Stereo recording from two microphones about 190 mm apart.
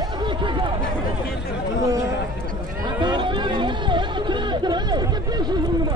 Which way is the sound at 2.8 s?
25° right (ahead or behind).